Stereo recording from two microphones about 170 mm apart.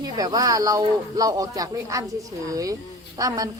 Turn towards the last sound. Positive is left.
turn(degrees=-20)  # may be behind; listen again after turning